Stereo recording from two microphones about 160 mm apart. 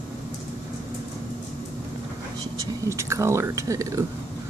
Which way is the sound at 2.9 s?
15° right (ahead or behind).